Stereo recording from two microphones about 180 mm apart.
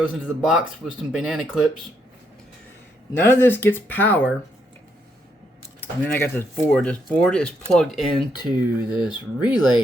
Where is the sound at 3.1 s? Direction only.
10° left (ahead or behind).